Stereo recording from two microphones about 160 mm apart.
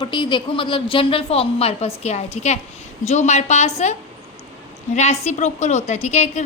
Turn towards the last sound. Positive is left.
turn(degrees=45)  # may be behind; listen again after turning